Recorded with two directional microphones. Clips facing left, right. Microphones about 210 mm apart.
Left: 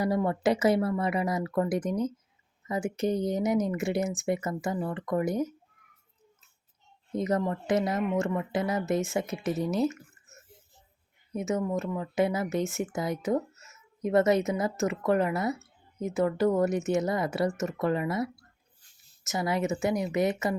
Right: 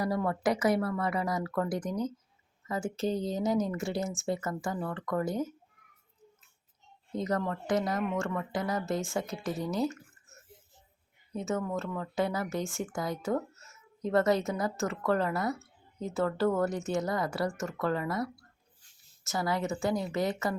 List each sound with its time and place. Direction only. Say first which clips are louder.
0.0 s speech: left 3 dB; 20° left (ahead or behind)
7.1 s speech: left 3 dB; 20° left (ahead or behind)
11.3 s speech: left 3 dB; 20° left (ahead or behind)